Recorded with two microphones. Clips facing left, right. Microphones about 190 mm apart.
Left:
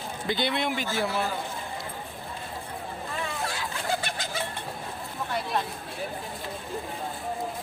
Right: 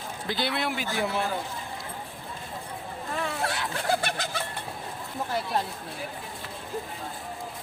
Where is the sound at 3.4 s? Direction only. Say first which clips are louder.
Right 3 dB; 70° right (ahead or behind).